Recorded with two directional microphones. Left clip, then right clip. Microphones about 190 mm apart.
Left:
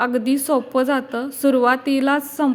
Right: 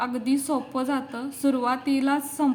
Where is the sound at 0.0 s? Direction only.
30° left (ahead or behind).